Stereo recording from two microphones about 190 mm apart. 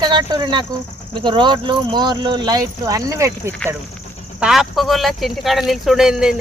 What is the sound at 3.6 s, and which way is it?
Speech, 5° left (ahead or behind).